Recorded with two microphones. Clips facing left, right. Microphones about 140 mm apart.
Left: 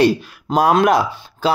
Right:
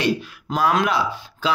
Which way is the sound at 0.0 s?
40° left (ahead or behind).